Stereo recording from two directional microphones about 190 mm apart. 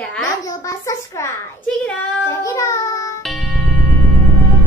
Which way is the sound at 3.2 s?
Centre (ahead or behind).